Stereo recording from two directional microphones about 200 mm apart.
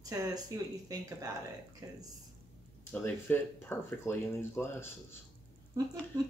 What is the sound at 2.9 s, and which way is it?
Speech, 10° left (ahead or behind).